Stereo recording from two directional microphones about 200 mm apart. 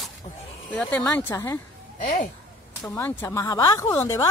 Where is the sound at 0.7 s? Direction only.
5° left (ahead or behind).